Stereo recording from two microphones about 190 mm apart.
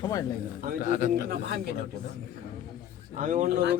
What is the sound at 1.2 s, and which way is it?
Speech, 55° right (ahead or behind).